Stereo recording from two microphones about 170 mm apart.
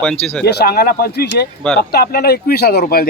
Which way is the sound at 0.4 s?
65° left (ahead or behind).